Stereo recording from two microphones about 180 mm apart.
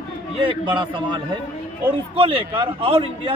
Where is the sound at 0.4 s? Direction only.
25° right (ahead or behind).